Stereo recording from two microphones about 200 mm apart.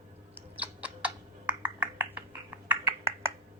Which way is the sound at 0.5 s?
5° right (ahead or behind).